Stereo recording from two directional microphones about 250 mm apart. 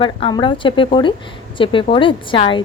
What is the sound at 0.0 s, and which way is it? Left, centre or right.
A woman's voice, centre.